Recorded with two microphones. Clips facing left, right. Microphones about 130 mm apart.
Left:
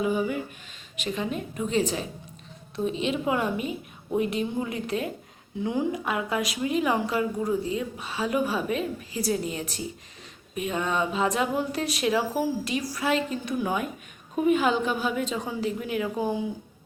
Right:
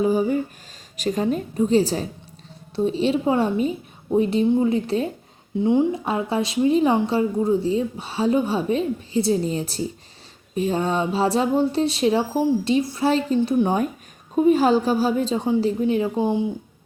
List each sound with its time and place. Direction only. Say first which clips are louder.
0.0 s a woman's voice: right 6 dB; 35° right (ahead or behind)